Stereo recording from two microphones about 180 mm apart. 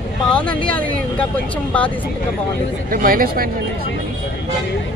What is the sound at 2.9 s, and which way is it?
Speech, 50° right (ahead or behind).